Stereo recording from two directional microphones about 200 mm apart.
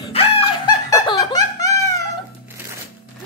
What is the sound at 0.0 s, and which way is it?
Laughter, 30° left (ahead or behind).